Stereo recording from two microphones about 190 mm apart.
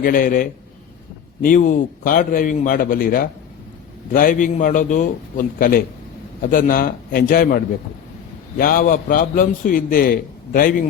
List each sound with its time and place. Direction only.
0.0 s a man's voice: 50° left (ahead or behind)